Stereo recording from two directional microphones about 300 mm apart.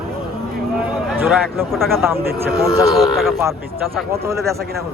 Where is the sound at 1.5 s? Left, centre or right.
Centre.